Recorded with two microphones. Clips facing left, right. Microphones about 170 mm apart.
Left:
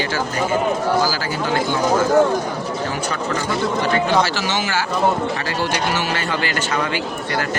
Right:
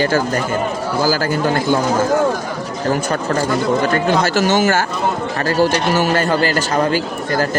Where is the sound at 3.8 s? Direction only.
45° right (ahead or behind).